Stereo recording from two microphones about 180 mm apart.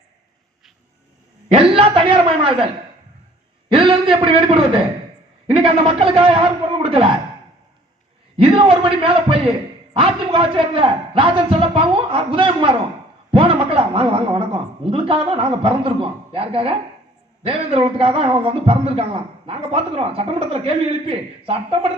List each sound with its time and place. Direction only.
1.5 s a man's voice: 30° right (ahead or behind)
3.7 s a man's voice: 30° right (ahead or behind)
8.4 s a man's voice: 30° right (ahead or behind)